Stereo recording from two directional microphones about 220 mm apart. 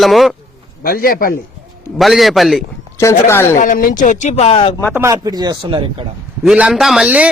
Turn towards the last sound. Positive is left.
turn(degrees=-5)  # may be behind; listen again after turning